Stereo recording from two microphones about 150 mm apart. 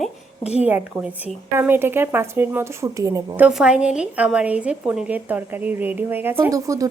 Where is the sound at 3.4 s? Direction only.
5° right (ahead or behind).